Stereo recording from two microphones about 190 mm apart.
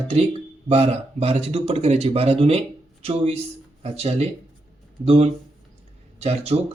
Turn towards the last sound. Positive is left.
turn(degrees=-35)  # may be behind; listen again after turning